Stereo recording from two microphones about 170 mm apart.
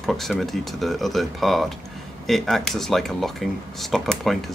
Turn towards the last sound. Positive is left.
turn(degrees=0)  # may be behind; listen again after turning